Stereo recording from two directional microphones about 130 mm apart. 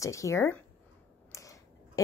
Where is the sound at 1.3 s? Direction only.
25° left (ahead or behind).